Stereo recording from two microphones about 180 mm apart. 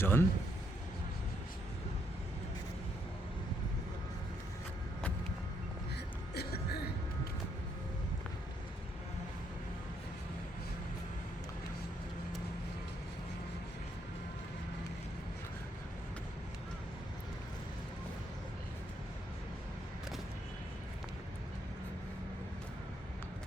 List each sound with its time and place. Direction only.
0.0 s a man's voice: 15° left (ahead or behind)
6.3 s music: 60° left (ahead or behind)